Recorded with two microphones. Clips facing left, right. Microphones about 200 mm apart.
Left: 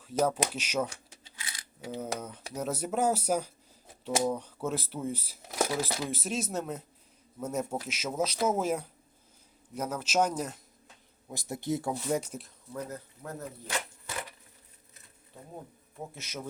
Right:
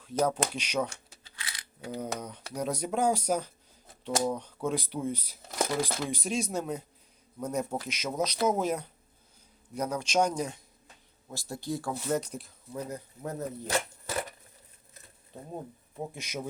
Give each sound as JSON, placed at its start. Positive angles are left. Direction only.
{"t": 0.0, "sound": "speech", "side_deg": 5}
{"t": 11.3, "sound": "speech", "side_deg": 20}
{"t": 12.7, "sound": "speech", "side_deg": -15}
{"t": 13.7, "sound": "a sound", "side_deg": -40}
{"t": 16.1, "sound": "speech", "side_deg": -15}